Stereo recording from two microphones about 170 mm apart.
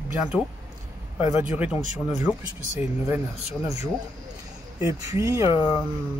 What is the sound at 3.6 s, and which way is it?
Speech, 20° right (ahead or behind).